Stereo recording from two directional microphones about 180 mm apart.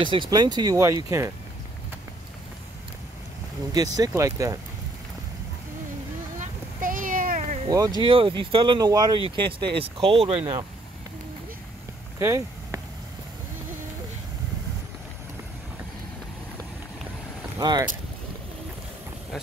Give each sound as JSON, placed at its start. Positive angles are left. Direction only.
{"t": 0.0, "sound": "speech", "side_deg": -25}
{"t": 3.7, "sound": "speech", "side_deg": -20}
{"t": 6.4, "sound": "a sound", "side_deg": -50}
{"t": 7.7, "sound": "speech", "side_deg": -20}
{"t": 12.2, "sound": "a sound", "side_deg": -15}
{"t": 17.6, "sound": "speech", "side_deg": -20}